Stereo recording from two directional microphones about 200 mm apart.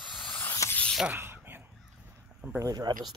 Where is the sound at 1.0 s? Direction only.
10° right (ahead or behind).